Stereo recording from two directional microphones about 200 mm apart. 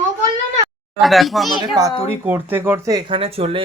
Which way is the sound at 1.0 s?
Centre (ahead or behind).